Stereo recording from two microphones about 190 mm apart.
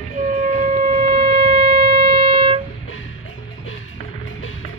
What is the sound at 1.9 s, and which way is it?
Wind instrument, 55° right (ahead or behind).